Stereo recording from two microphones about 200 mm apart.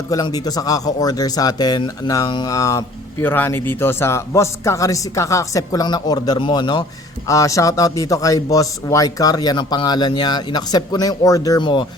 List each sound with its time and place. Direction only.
0.1 s speech: 20° left (ahead or behind)